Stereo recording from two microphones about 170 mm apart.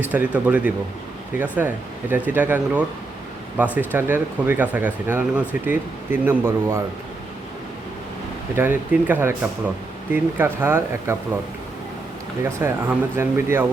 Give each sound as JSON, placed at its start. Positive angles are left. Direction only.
{"t": 0.0, "sound": "speech", "side_deg": -10}
{"t": 8.5, "sound": "speech", "side_deg": -10}
{"t": 12.4, "sound": "speech", "side_deg": -15}